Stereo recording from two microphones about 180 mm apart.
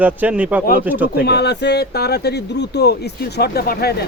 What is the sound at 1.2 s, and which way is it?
Speech, 65° left (ahead or behind).